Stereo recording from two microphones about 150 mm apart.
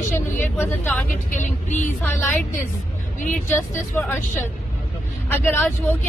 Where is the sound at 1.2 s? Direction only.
55° left (ahead or behind).